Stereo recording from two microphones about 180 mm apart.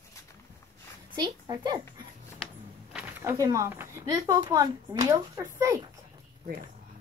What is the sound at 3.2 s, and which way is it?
Speech, 15° right (ahead or behind).